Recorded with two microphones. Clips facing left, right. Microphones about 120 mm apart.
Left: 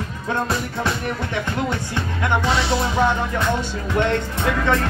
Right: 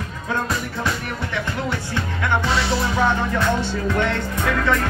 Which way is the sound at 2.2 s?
20° left (ahead or behind).